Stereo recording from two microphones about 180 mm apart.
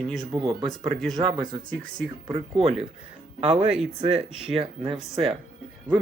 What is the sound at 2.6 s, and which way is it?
Speech, 35° right (ahead or behind).